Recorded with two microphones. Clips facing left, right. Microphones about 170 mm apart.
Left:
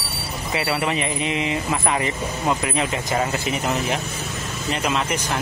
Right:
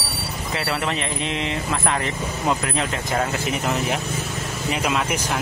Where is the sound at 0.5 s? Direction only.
5° left (ahead or behind).